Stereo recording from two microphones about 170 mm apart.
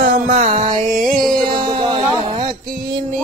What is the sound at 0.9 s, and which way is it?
Music, 55° right (ahead or behind).